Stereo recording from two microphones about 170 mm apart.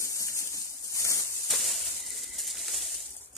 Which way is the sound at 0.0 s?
15° left (ahead or behind).